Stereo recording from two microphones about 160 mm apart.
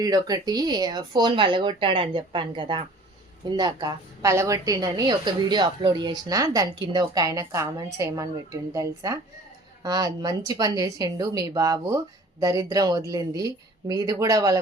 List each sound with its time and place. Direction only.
0.0 s a woman's voice: 25° right (ahead or behind)